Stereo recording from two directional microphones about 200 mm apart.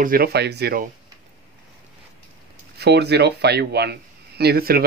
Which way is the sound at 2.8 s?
55° right (ahead or behind).